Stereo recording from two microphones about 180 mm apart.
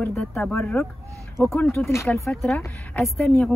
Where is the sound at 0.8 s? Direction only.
15° left (ahead or behind).